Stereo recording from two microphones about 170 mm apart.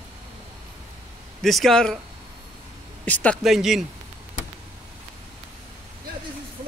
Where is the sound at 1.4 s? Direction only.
Centre (ahead or behind).